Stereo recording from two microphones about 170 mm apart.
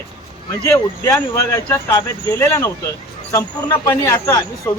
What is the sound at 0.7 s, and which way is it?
Speech, 20° left (ahead or behind).